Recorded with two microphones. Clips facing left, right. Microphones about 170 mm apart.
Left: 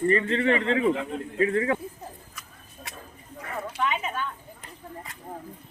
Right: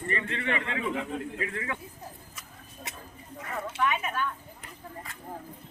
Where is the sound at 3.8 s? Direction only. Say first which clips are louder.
Even; 20° left (ahead or behind).